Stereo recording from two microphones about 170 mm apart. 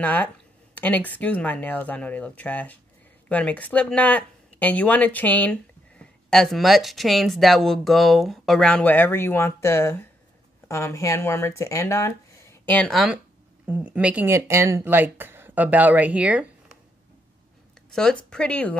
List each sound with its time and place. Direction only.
0.0 s speech: 10° left (ahead or behind); by 16.4 s 10° right (ahead or behind)
17.9 s speech: 5° left (ahead or behind)